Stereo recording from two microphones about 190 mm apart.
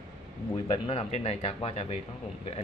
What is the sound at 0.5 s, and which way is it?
Speech, 30° left (ahead or behind).